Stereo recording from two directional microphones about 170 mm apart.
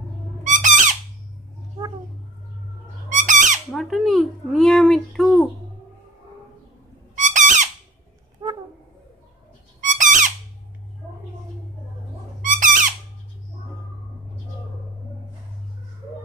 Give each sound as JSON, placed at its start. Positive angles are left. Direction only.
{"t": 0.4, "sound": "squawk", "side_deg": -50}
{"t": 3.1, "sound": "squawk", "side_deg": -45}
{"t": 3.7, "sound": "speech", "side_deg": 0}
{"t": 7.2, "sound": "a sound", "side_deg": -45}
{"t": 8.4, "sound": "a sound", "side_deg": -20}
{"t": 9.8, "sound": "squeak", "side_deg": -50}
{"t": 12.4, "sound": "squawk", "side_deg": -50}